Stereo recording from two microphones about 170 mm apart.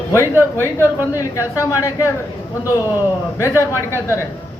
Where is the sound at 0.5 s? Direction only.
15° left (ahead or behind).